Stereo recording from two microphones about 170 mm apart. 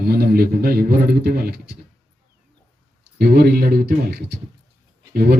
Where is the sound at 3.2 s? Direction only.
65° right (ahead or behind).